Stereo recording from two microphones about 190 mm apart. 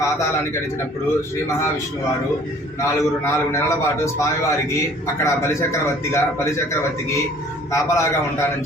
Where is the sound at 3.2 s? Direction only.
15° left (ahead or behind).